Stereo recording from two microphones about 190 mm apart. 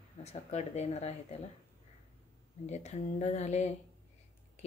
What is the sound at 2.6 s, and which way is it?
Speech, 35° left (ahead or behind).